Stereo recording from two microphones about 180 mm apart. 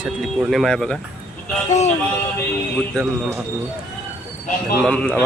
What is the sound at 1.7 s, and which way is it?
Music, 40° left (ahead or behind).